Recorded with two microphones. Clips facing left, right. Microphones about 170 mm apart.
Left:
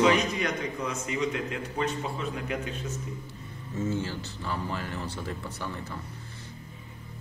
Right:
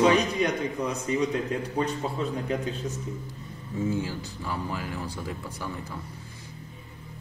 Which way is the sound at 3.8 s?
10° right (ahead or behind).